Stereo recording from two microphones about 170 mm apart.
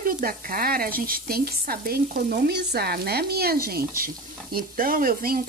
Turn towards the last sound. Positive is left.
turn(degrees=-55)  # may be behind; listen again after turning